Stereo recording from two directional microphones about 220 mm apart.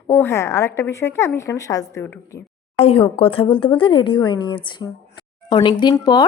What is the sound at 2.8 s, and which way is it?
A woman's voice, 25° left (ahead or behind).